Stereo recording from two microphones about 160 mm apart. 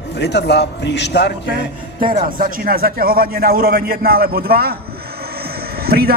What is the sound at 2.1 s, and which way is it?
A man's voice, 60° right (ahead or behind).